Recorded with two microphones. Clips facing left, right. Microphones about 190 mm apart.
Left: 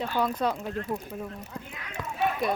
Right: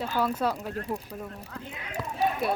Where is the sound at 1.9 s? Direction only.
35° right (ahead or behind).